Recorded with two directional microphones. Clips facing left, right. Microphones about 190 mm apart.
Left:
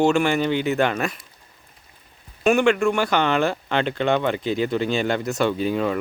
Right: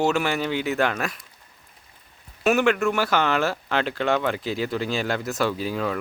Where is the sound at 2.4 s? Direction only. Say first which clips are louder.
Left 3 dB; 5° right (ahead or behind).